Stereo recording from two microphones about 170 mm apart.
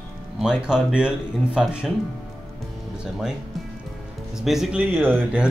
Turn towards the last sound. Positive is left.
turn(degrees=-10)  # may be behind; listen again after turning